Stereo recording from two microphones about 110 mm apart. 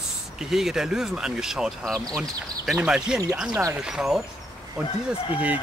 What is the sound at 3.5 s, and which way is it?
Speech, 30° right (ahead or behind).